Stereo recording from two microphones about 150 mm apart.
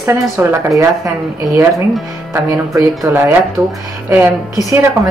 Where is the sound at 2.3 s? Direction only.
20° right (ahead or behind).